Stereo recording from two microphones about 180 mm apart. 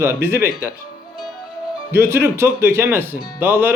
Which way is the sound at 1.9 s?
15° right (ahead or behind).